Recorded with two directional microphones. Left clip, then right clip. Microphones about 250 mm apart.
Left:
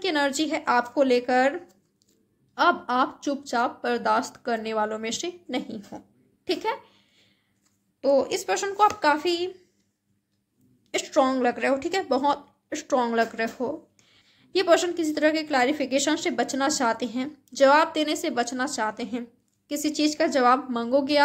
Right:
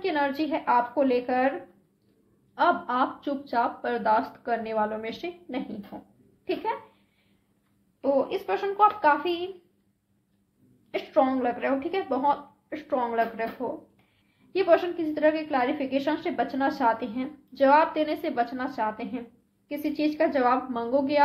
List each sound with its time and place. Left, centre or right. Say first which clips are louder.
0.0 s a woman's voice: left 2 dB; left
2.5 s a woman's voice: left 2 dB; left
8.0 s a woman's voice: left 3 dB; left
10.9 s a woman's voice: left 1 dB; left